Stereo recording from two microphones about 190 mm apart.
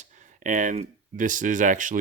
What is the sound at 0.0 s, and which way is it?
Speech, 40° right (ahead or behind).